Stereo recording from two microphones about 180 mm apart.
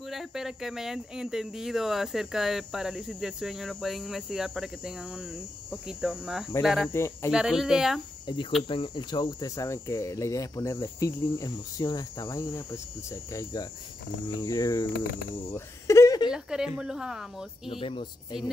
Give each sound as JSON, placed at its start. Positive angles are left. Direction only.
{"t": 0.1, "sound": "speech", "side_deg": 0}
{"t": 6.9, "sound": "speech", "side_deg": 15}
{"t": 7.2, "sound": "speech", "side_deg": -5}
{"t": 8.3, "sound": "speech", "side_deg": 25}
{"t": 12.4, "sound": "speech", "side_deg": 15}
{"t": 16.3, "sound": "speech", "side_deg": -5}
{"t": 17.6, "sound": "speech", "side_deg": 30}